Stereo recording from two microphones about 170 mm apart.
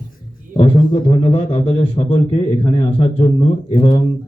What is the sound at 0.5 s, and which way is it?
A man's voice, 30° left (ahead or behind).